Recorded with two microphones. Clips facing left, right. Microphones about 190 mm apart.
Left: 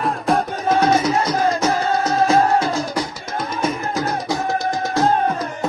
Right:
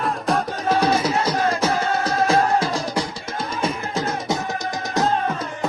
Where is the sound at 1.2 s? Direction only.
30° right (ahead or behind).